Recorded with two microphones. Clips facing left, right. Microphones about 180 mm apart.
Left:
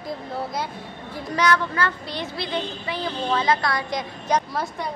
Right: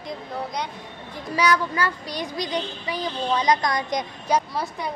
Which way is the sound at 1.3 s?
10° right (ahead or behind).